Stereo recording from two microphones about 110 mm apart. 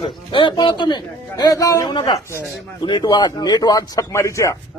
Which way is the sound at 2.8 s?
45° left (ahead or behind).